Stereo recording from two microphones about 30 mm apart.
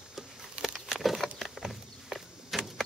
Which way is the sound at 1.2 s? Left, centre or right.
Centre.